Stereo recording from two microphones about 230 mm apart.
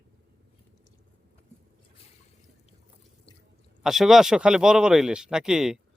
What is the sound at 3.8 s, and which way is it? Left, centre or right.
Speech, centre.